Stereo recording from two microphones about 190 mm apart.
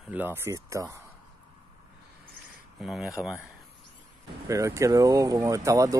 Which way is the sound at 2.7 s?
Centre (ahead or behind).